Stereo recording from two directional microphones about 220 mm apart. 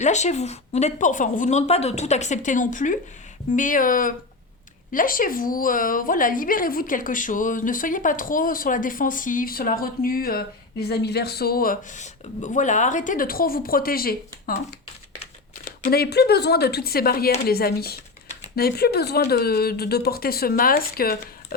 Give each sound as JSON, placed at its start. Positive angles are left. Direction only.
{"t": 0.0, "sound": "a woman's voice", "side_deg": 30}
{"t": 15.8, "sound": "speech", "side_deg": 45}